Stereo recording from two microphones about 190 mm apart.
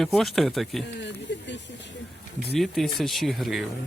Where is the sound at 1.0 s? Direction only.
70° left (ahead or behind).